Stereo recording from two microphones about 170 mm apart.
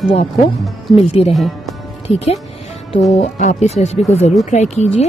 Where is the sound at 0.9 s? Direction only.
35° left (ahead or behind).